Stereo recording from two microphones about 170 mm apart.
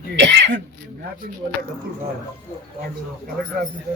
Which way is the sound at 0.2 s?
90° right.